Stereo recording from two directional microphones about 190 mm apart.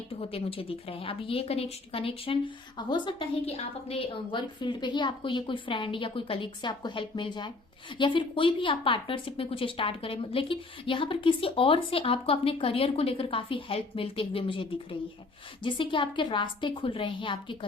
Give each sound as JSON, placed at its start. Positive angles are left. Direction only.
{"t": 0.2, "sound": "a woman's voice", "side_deg": 30}